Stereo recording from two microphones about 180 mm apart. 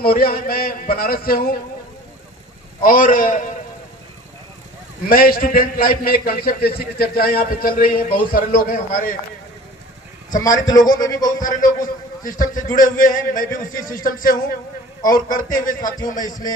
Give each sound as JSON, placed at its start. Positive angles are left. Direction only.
{"t": 0.0, "sound": "a man's voice", "side_deg": 55}
{"t": 2.8, "sound": "a man's voice", "side_deg": 50}
{"t": 5.0, "sound": "a man's voice", "side_deg": 55}
{"t": 10.3, "sound": "a man's voice", "side_deg": 20}
{"t": 11.4, "sound": "a man's voice", "side_deg": 50}
{"t": 16.2, "sound": "a man's voice", "side_deg": 20}